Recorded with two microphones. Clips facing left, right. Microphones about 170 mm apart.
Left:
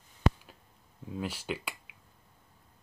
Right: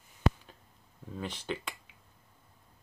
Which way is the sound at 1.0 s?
10° left (ahead or behind).